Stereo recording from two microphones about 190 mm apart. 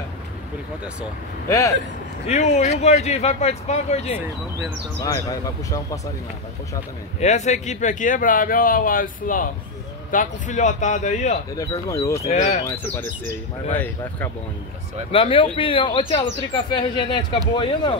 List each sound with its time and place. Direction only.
2.2 s speech: 35° left (ahead or behind)
5.0 s speech: 15° left (ahead or behind)
7.2 s speech: 35° left (ahead or behind)
11.5 s speech: 15° left (ahead or behind)
12.3 s speech: 35° left (ahead or behind)
12.6 s speech: 10° left (ahead or behind)
15.0 s speech: 30° left (ahead or behind)